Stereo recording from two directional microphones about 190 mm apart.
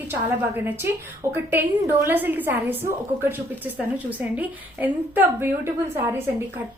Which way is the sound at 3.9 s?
5° right (ahead or behind).